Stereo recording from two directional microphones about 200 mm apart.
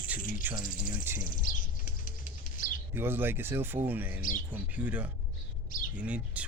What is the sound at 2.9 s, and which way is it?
Speech, 10° right (ahead or behind).